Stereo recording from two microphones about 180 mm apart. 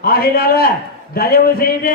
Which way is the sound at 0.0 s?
55° left (ahead or behind).